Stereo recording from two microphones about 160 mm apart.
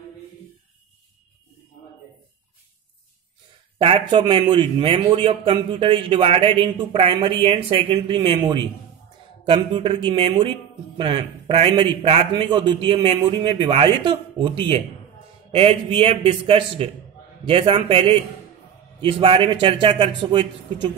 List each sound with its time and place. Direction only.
3.7 s a man's voice: 35° right (ahead or behind)
15.5 s a man's voice: 35° right (ahead or behind)